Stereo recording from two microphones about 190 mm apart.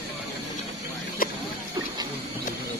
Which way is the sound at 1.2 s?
50° left (ahead or behind).